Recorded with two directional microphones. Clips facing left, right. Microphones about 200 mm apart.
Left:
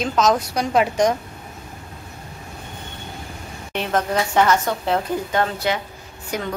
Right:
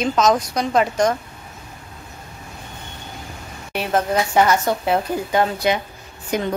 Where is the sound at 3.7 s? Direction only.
10° right (ahead or behind).